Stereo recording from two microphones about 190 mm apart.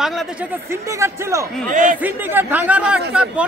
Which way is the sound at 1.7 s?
45° right (ahead or behind).